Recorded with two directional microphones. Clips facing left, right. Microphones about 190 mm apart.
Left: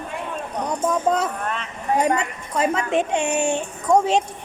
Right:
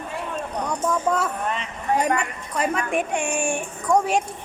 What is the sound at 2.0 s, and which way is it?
A woman's voice, 25° left (ahead or behind).